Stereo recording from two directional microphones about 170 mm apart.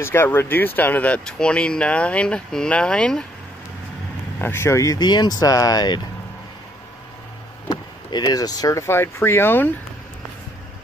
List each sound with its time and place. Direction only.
0.0 s speech: 15° left (ahead or behind)
4.4 s speech: 15° left (ahead or behind)
8.1 s speech: 20° left (ahead or behind)